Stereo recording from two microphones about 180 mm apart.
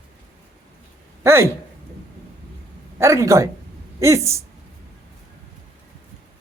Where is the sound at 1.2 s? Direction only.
15° right (ahead or behind).